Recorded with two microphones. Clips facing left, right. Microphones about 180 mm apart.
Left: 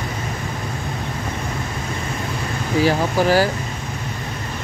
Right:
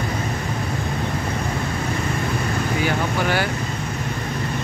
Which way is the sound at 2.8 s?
35° left (ahead or behind).